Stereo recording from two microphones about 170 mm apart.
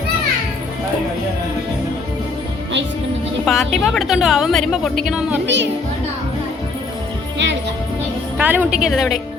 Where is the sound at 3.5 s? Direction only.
Centre (ahead or behind).